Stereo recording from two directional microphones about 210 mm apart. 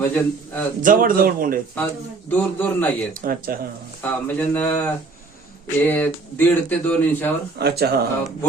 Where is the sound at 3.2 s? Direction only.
45° right (ahead or behind).